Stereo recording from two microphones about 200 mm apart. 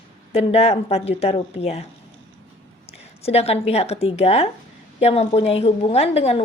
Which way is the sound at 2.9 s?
30° left (ahead or behind).